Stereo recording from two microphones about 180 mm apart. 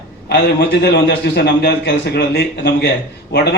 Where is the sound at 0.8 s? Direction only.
65° left (ahead or behind).